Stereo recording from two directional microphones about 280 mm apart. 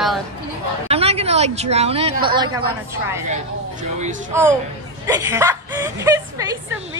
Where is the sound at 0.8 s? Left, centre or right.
Right.